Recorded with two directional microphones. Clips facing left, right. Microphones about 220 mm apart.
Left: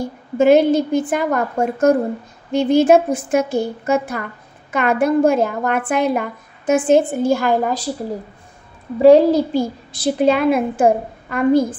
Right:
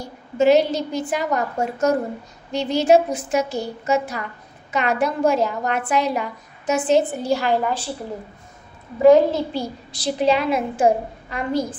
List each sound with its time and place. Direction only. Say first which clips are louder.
0.0 s a woman's voice: left 3 dB; 55° left (ahead or behind)
9.0 s a child's voice: left 3 dB; 35° left (ahead or behind)
9.5 s a woman's voice: left 7 dB; 50° left (ahead or behind)